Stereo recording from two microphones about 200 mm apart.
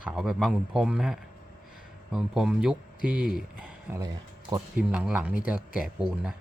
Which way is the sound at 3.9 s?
20° right (ahead or behind).